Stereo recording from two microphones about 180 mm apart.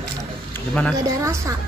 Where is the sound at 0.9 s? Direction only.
15° right (ahead or behind).